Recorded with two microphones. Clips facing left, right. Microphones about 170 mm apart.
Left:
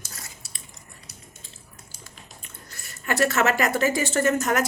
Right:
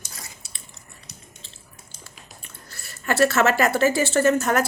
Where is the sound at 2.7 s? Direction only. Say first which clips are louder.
Right 2 dB; 15° left (ahead or behind).